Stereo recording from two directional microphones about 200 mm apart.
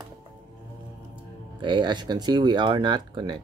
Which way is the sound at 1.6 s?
25° right (ahead or behind).